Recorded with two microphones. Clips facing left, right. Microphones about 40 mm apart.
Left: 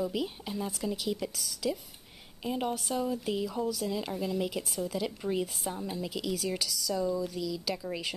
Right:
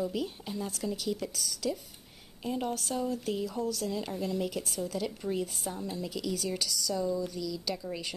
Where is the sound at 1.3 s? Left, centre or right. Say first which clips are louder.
Even; centre.